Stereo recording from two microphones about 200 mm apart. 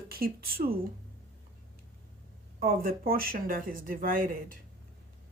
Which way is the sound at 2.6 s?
45° right (ahead or behind).